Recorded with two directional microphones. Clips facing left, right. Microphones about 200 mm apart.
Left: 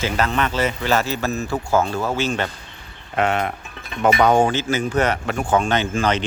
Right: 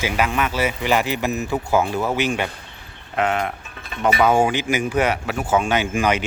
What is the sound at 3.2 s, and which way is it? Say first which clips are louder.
Speech: left 1 dB; centre (ahead or behind).